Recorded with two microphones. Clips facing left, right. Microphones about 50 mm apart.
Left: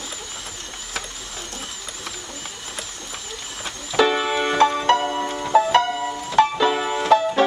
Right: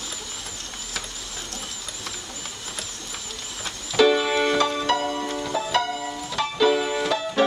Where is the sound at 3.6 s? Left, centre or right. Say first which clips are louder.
Even; centre.